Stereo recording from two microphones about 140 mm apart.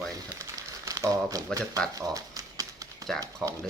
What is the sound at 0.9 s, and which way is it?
Crumpling, 25° right (ahead or behind).